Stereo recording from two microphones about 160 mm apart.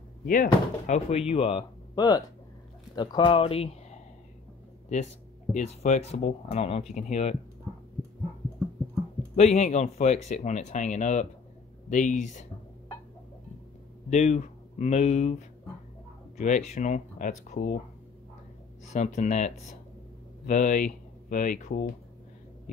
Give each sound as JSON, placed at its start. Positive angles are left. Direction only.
{"t": 0.3, "sound": "speech", "side_deg": 50}
{"t": 4.8, "sound": "speech", "side_deg": 45}
{"t": 9.3, "sound": "speech", "side_deg": 45}
{"t": 14.1, "sound": "speech", "side_deg": 45}
{"t": 18.9, "sound": "speech", "side_deg": 45}